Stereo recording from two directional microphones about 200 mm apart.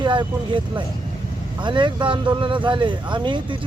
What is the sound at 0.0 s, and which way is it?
Speech, 25° right (ahead or behind).